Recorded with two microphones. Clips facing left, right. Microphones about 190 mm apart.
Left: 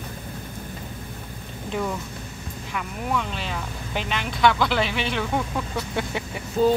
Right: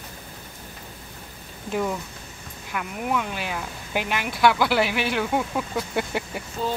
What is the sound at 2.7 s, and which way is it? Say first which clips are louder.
Speech: right 1 dB; 5° right (ahead or behind).